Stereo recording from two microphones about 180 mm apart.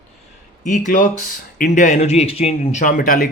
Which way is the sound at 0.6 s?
45° left (ahead or behind).